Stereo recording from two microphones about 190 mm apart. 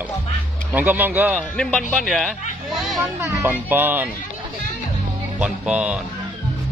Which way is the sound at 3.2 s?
15° right (ahead or behind).